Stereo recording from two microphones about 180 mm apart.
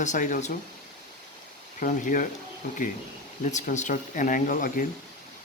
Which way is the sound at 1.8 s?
45° left (ahead or behind).